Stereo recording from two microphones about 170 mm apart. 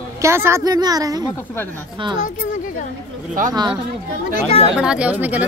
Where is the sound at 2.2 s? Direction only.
50° left (ahead or behind).